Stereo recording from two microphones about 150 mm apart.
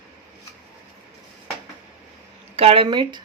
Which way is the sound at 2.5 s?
40° right (ahead or behind).